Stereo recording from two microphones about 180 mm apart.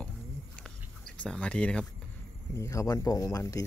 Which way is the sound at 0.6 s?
5° left (ahead or behind).